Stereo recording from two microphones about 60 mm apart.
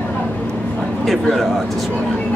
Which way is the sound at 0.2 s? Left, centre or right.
Centre.